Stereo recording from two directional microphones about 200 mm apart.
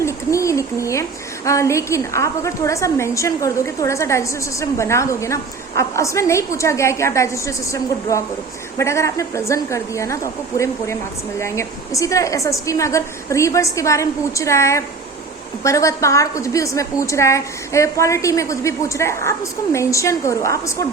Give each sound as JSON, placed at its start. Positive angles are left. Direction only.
{"t": 0.0, "sound": "a sound", "side_deg": 15}
{"t": 1.5, "sound": "a woman's voice", "side_deg": 15}
{"t": 11.3, "sound": "a woman's voice", "side_deg": 15}